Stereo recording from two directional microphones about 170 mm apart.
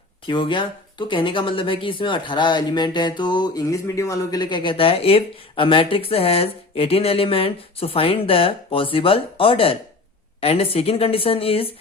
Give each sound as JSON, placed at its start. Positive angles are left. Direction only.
{"t": 0.3, "sound": "speech", "side_deg": 30}